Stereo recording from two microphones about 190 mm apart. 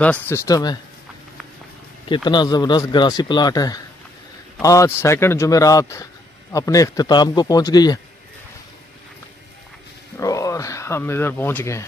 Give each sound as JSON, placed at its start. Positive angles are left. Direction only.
{"t": 0.0, "sound": "speech", "side_deg": 10}
{"t": 2.2, "sound": "speech", "side_deg": 20}
{"t": 10.1, "sound": "a sound", "side_deg": 15}